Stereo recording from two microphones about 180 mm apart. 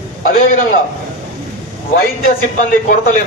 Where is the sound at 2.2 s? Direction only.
45° left (ahead or behind).